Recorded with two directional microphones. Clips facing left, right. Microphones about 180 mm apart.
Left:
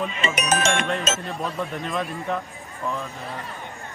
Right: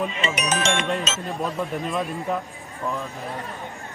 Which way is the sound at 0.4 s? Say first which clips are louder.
Left 2 dB; 50° left (ahead or behind).